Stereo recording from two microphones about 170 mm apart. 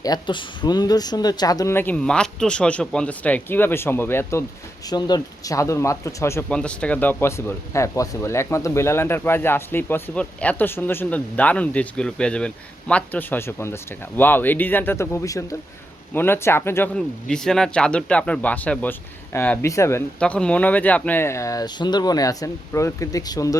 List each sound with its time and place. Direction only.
0.0 s speech: 25° left (ahead or behind)
16.9 s speech: 5° left (ahead or behind)
20.1 s speech: 5° left (ahead or behind); by 23.6 s 20° left (ahead or behind)